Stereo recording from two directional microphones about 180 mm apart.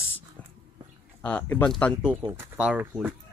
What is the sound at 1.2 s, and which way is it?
Speech, 10° left (ahead or behind).